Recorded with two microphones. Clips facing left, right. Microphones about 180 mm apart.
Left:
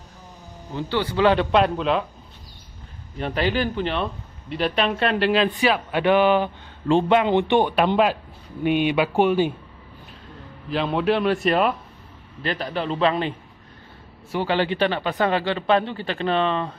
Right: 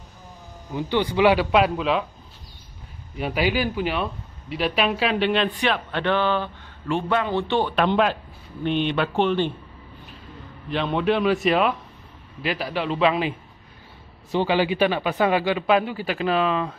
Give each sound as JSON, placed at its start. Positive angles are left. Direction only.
{"t": 0.7, "sound": "speech", "side_deg": -15}
{"t": 3.2, "sound": "a man's voice", "side_deg": -5}
{"t": 6.9, "sound": "a man's voice", "side_deg": 30}
{"t": 7.2, "sound": "speech", "side_deg": 20}
{"t": 10.7, "sound": "a man's voice", "side_deg": 0}
{"t": 14.3, "sound": "speech", "side_deg": -15}